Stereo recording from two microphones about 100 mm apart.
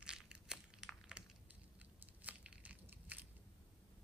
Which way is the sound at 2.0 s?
15° right (ahead or behind).